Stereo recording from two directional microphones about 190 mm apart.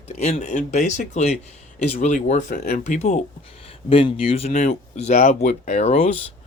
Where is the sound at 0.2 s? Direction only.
35° left (ahead or behind).